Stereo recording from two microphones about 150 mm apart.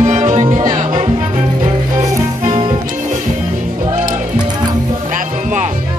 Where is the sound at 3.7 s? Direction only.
55° right (ahead or behind).